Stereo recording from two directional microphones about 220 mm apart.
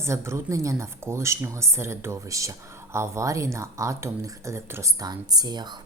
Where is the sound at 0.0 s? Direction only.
10° right (ahead or behind).